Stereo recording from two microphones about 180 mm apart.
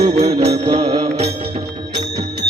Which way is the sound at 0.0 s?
35° right (ahead or behind).